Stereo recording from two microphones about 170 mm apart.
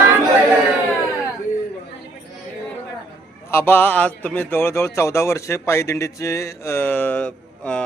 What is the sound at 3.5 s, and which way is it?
Speech, 15° left (ahead or behind).